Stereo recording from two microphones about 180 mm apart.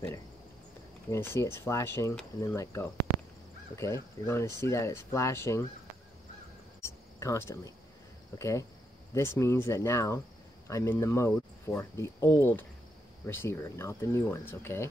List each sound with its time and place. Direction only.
1.1 s speech: 15° left (ahead or behind)
6.8 s a sound: 15° left (ahead or behind)
8.4 s speech: 15° left (ahead or behind)